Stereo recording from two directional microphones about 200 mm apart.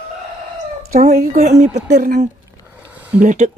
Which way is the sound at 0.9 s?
40° right (ahead or behind).